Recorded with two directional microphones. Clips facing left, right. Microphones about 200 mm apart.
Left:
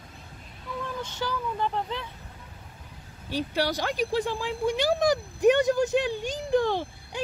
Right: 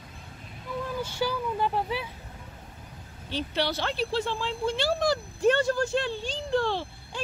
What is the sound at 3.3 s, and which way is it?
Speech, 10° left (ahead or behind).